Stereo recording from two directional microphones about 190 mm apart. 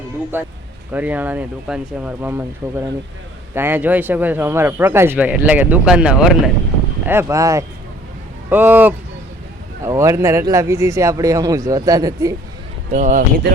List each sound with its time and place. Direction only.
0.3 s speech: 10° right (ahead or behind)
3.5 s speech: 10° right (ahead or behind)
12.9 s speech: 40° right (ahead or behind)